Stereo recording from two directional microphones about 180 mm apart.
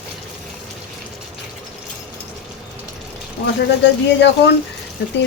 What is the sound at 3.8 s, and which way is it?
Speech, 70° left (ahead or behind).